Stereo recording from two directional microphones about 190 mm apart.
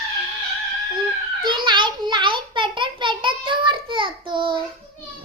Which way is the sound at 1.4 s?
25° right (ahead or behind).